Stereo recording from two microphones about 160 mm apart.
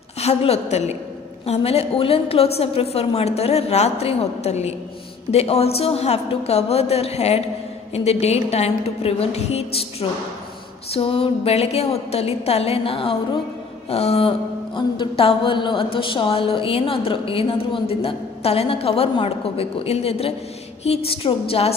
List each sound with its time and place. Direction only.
0.2 s a woman's voice: 40° left (ahead or behind)